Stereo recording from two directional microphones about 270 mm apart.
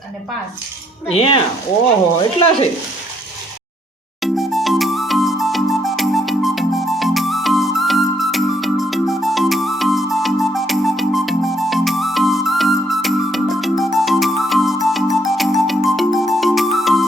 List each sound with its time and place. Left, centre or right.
1.0 s speech: centre
4.2 s music: centre